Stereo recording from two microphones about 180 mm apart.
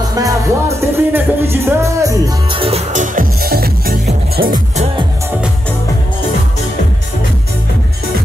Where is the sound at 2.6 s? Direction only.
35° right (ahead or behind); by 4.6 s 55° right (ahead or behind).